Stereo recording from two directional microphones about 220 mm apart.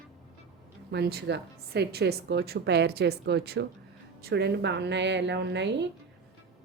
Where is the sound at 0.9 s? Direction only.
50° right (ahead or behind).